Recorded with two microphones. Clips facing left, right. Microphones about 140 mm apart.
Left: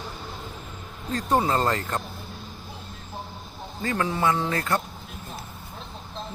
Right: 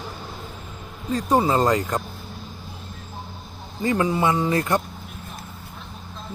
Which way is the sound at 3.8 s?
15° right (ahead or behind).